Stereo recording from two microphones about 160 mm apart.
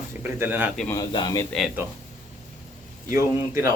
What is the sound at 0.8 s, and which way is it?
Speech, 25° left (ahead or behind).